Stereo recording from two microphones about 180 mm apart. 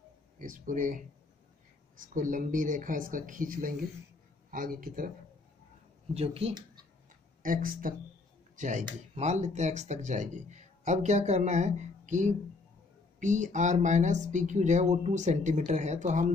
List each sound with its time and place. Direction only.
0.4 s speech: 45° right (ahead or behind)
6.1 s speech: 35° right (ahead or behind)
7.4 s speech: 50° right (ahead or behind)